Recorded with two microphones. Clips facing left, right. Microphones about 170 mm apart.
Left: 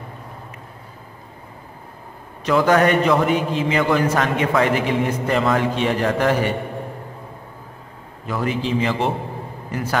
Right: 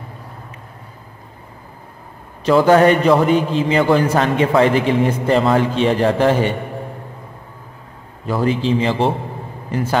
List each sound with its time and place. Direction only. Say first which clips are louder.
2.4 s a man's voice: right 5 dB; 30° right (ahead or behind)
8.3 s a man's voice: right 5 dB; 30° right (ahead or behind)